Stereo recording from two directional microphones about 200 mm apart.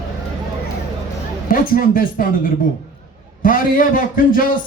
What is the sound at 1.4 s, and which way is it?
A man's voice, 45° left (ahead or behind).